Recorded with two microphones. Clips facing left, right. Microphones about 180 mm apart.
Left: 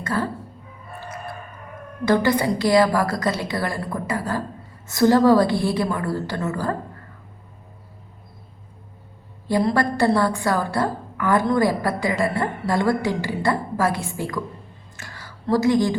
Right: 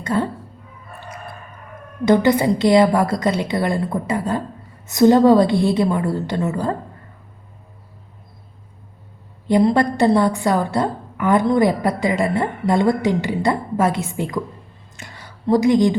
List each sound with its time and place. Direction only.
0.0 s speech: 20° right (ahead or behind)
2.0 s a woman's voice: 20° right (ahead or behind)
9.5 s a woman's voice: 20° right (ahead or behind)
14.9 s a sound: 20° right (ahead or behind)